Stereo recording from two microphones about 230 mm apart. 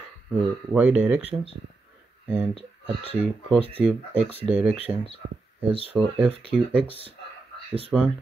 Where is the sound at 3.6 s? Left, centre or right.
Right.